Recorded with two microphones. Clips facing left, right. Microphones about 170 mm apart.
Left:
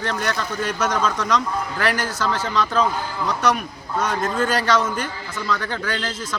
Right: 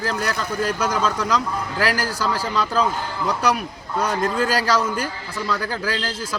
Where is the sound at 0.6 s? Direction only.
30° right (ahead or behind).